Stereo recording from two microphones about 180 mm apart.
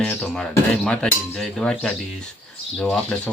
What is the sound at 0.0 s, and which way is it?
Speech, 10° left (ahead or behind).